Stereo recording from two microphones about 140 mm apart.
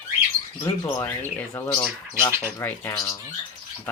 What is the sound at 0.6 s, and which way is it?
Speech, 20° left (ahead or behind).